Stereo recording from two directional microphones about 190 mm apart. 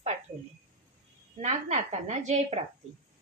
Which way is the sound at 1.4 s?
40° right (ahead or behind).